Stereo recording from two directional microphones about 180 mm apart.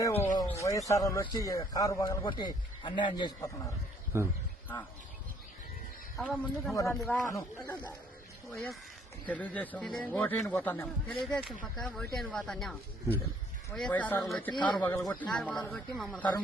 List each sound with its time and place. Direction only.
0.3 s a man's voice: 15° left (ahead or behind)
4.1 s a man's voice: 15° right (ahead or behind)
6.1 s speech: centre (ahead or behind)
6.7 s speech: 15° left (ahead or behind)
8.5 s speech: centre (ahead or behind)
13.7 s speech: 5° left (ahead or behind)
14.5 s a man's voice: 25° left (ahead or behind)
14.8 s speech: 15° left (ahead or behind)
15.3 s speech: 5° left (ahead or behind)